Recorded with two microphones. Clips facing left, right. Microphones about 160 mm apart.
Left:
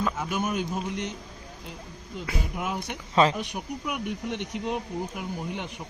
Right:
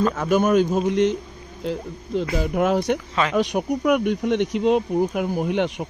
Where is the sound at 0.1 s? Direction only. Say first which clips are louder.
Right 11 dB; 90° right.